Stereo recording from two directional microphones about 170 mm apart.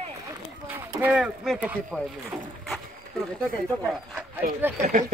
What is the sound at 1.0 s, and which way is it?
Speech, 5° right (ahead or behind).